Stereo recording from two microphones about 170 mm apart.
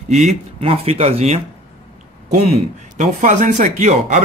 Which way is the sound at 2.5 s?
45° right (ahead or behind).